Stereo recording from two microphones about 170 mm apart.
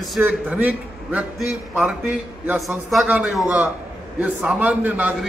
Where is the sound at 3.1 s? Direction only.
10° right (ahead or behind).